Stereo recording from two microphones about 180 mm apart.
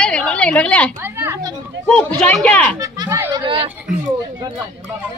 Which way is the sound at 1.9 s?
5° left (ahead or behind).